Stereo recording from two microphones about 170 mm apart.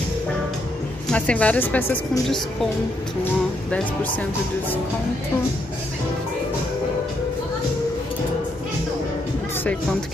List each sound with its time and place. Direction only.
1.0 s a woman's voice: 5° left (ahead or behind)